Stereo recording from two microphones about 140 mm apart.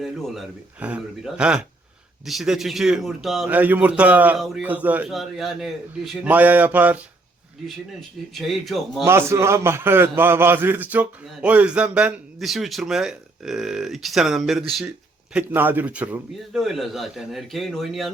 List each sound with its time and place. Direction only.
0.0 s speech: centre (ahead or behind)
3.5 s a man's voice: 10° right (ahead or behind)
5.0 s speech: centre (ahead or behind)
6.2 s a man's voice: 10° right (ahead or behind)
8.3 s speech: centre (ahead or behind)
9.0 s a man's voice: 20° right (ahead or behind)
16.6 s speech: centre (ahead or behind)